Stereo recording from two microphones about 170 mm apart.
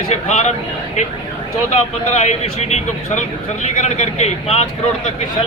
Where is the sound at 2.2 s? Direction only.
40° left (ahead or behind).